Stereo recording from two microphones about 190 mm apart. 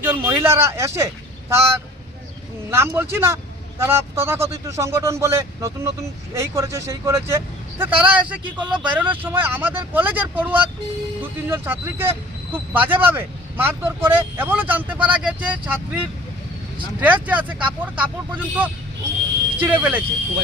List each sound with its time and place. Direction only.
0.0 s speech: 10° right (ahead or behind)
17.0 s speech: 5° right (ahead or behind)